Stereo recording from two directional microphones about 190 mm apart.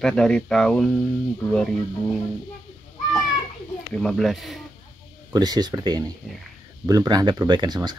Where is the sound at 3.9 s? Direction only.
Centre (ahead or behind).